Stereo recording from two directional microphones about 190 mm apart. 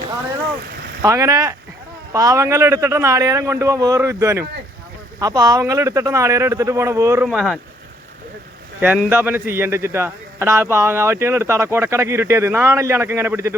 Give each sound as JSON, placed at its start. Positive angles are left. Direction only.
{"t": 1.0, "sound": "a man's voice", "side_deg": -15}
{"t": 7.3, "sound": "speech", "side_deg": 0}
{"t": 8.8, "sound": "a man's voice", "side_deg": -10}